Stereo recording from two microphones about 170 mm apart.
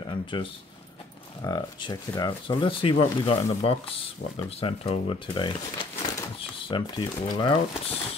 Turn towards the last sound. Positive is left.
turn(degrees=30)  # may be behind; listen again after turning